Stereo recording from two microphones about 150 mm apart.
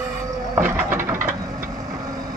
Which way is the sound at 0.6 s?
15° right (ahead or behind).